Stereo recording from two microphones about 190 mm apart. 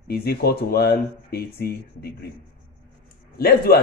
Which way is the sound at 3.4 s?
55° left (ahead or behind).